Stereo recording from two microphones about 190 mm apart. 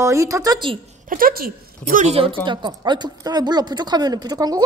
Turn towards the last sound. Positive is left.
turn(degrees=-20)  # may be behind; listen again after turning